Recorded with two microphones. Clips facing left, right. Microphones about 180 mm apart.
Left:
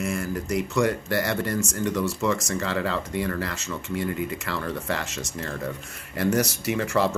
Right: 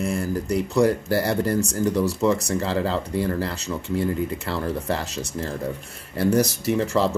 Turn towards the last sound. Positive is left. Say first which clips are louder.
# right 3 dB
turn(degrees=-35)  # may be behind; listen again after turning